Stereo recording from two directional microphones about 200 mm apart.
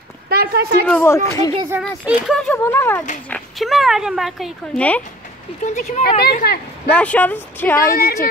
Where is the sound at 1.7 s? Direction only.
10° right (ahead or behind).